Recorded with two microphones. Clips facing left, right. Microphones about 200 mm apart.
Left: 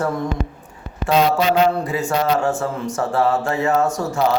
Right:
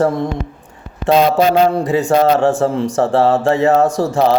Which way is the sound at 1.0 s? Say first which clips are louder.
Right 5 dB; 35° right (ahead or behind).